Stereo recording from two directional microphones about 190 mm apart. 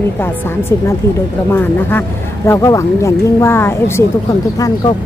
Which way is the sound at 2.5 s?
15° left (ahead or behind).